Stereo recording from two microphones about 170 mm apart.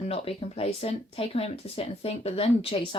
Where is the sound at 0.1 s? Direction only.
35° left (ahead or behind).